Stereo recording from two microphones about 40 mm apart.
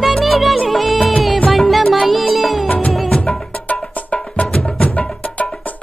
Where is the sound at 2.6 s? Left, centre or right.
Left.